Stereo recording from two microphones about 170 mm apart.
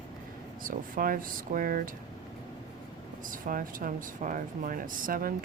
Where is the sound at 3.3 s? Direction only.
55° right (ahead or behind).